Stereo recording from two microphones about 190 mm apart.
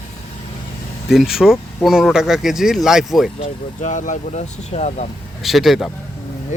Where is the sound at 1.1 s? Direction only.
Centre (ahead or behind).